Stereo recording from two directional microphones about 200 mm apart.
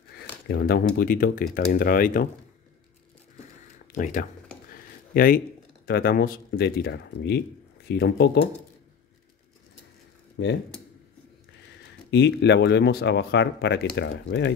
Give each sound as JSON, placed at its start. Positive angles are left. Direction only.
{"t": 0.5, "sound": "speech", "side_deg": 50}
{"t": 3.8, "sound": "speech", "side_deg": 40}
{"t": 10.4, "sound": "speech", "side_deg": 65}
{"t": 12.1, "sound": "speech", "side_deg": 55}